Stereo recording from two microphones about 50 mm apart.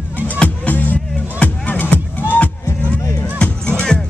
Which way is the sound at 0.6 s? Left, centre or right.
Left.